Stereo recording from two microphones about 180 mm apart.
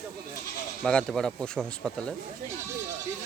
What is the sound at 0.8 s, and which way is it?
Speech, 5° left (ahead or behind).